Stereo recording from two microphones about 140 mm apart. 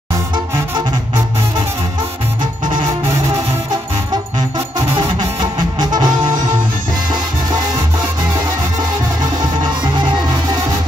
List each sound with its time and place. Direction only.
4.9 s music: 30° right (ahead or behind)